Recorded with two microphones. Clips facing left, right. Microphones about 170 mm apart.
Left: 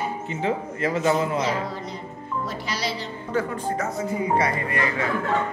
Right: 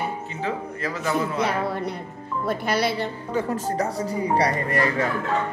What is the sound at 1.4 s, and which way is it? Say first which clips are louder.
Speech: right 2 dB; 60° right (ahead or behind).